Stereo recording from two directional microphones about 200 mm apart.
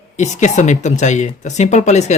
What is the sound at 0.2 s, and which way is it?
Speech, 35° left (ahead or behind).